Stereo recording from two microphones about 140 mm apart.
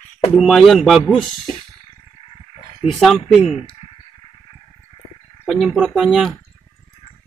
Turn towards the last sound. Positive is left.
turn(degrees=-5)  # may be behind; listen again after turning